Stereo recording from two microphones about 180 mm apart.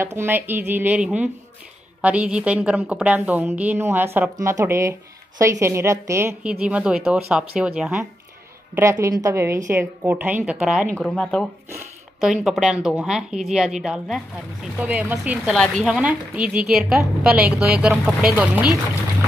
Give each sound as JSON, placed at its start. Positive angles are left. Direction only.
{"t": 0.0, "sound": "a woman's voice", "side_deg": -15}
{"t": 9.0, "sound": "a woman's voice", "side_deg": -15}